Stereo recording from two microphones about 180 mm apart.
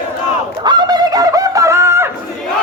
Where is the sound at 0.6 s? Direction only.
25° right (ahead or behind).